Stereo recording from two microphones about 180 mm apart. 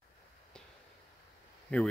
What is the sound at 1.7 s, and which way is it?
Speech, 5° left (ahead or behind).